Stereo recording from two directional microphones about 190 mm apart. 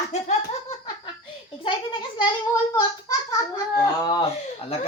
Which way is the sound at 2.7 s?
15° left (ahead or behind).